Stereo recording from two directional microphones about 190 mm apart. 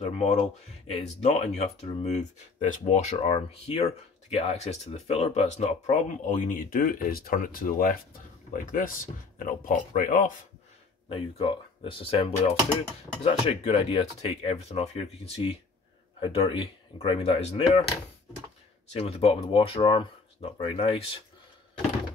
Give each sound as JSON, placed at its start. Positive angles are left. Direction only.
{"t": 0.2, "sound": "speech", "side_deg": 35}
{"t": 11.1, "sound": "speech", "side_deg": 30}
{"t": 18.9, "sound": "speech", "side_deg": 30}